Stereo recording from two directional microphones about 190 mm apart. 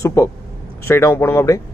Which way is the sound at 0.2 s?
15° left (ahead or behind).